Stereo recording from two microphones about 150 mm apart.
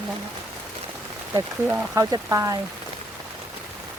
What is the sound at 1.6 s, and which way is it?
Speech, 10° right (ahead or behind).